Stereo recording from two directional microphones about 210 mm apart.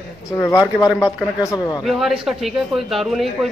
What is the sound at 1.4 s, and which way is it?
Speech, 20° left (ahead or behind).